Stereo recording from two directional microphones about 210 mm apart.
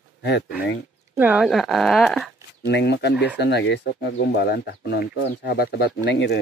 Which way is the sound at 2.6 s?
55° left (ahead or behind).